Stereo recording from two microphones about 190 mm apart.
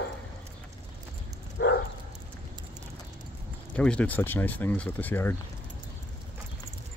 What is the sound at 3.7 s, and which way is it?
Speech, 5° left (ahead or behind).